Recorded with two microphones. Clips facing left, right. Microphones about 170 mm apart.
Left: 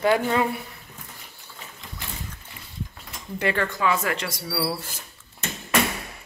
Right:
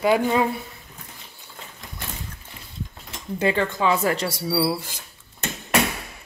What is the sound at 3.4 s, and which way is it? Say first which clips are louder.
Speech: right 3 dB; 25° right (ahead or behind).